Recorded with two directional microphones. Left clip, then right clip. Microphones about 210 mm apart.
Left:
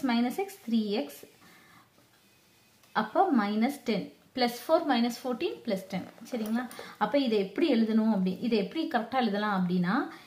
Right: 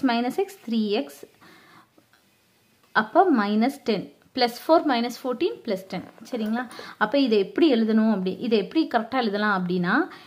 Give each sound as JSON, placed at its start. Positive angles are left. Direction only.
{"t": 0.0, "sound": "a woman's voice", "side_deg": -45}
{"t": 2.9, "sound": "a woman's voice", "side_deg": -45}